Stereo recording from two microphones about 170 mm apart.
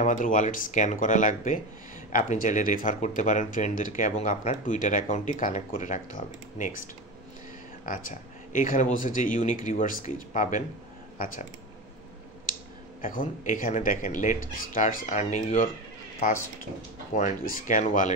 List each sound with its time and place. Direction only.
0.0 s speech: 50° left (ahead or behind)
8.5 s speech: 50° left (ahead or behind)
13.0 s speech: 55° left (ahead or behind)
17.1 s speech: 50° left (ahead or behind)